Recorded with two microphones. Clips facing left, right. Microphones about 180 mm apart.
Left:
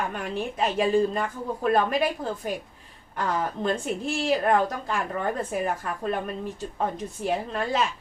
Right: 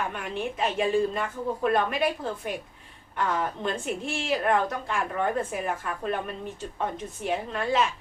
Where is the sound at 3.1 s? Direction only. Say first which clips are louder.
Left 1 dB; 40° left (ahead or behind).